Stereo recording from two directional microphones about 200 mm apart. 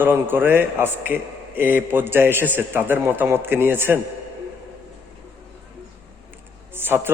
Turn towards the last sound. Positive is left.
turn(degrees=-10)  # may be behind; listen again after turning